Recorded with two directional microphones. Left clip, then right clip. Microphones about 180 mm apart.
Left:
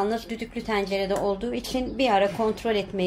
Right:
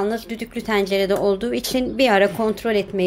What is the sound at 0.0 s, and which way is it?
Speech, 20° right (ahead or behind).